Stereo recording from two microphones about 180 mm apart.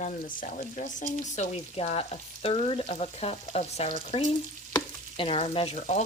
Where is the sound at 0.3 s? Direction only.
45° left (ahead or behind).